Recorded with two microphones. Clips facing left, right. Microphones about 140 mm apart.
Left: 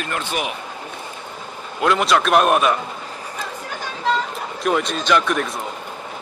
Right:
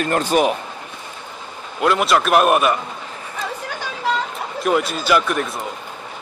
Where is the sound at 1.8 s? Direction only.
Centre (ahead or behind).